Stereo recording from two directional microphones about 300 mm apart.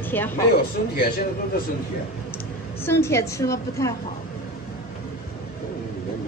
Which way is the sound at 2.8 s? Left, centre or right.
Centre.